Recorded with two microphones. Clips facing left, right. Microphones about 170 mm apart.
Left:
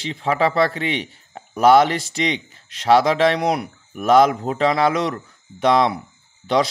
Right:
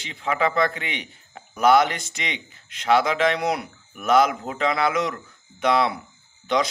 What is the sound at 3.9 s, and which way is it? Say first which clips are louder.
Speech: left 5 dB; 35° left (ahead or behind).